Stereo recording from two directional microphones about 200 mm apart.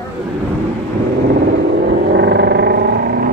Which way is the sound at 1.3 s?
60° right (ahead or behind).